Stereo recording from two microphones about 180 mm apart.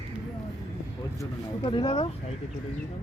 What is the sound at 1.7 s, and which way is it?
Speech, 25° left (ahead or behind).